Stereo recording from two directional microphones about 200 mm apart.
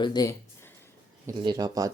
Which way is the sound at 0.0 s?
20° left (ahead or behind).